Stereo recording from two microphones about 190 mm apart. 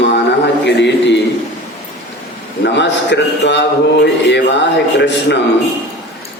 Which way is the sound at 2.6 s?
65° left (ahead or behind).